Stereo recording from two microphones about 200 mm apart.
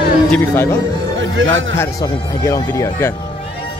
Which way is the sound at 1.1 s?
75° right (ahead or behind).